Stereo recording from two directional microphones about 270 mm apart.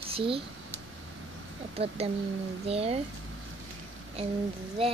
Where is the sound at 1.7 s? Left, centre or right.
Right.